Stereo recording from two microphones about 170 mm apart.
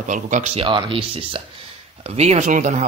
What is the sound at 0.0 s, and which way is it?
Speech, 45° right (ahead or behind).